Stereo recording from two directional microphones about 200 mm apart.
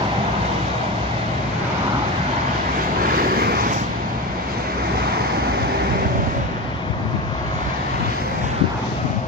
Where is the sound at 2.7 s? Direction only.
45° right (ahead or behind).